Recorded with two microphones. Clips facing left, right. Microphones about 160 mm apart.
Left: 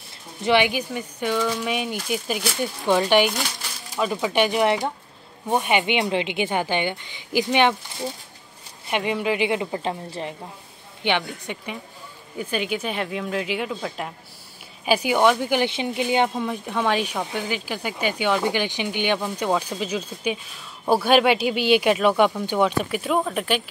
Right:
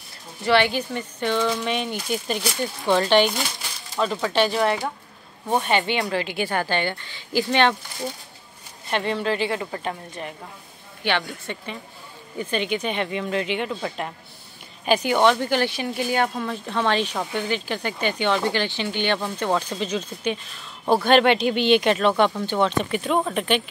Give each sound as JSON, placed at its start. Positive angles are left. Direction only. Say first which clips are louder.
{"t": 0.4, "sound": "speech", "louder": "even", "side_deg": 15}
{"t": 8.9, "sound": "a woman's voice", "louder": "even", "side_deg": 10}
{"t": 11.1, "sound": "speech", "louder": "left 1 dB", "side_deg": 15}